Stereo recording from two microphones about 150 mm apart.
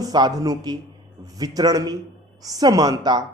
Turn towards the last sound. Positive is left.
turn(degrees=-25)  # may be behind; listen again after turning